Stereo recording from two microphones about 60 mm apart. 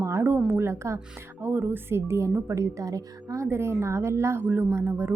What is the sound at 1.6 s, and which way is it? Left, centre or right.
A woman's voice, right.